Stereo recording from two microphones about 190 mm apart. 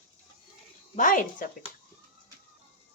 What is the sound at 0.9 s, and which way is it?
Speech, 45° left (ahead or behind).